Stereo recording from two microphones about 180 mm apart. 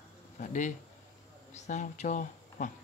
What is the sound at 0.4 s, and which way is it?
Speech, 45° left (ahead or behind).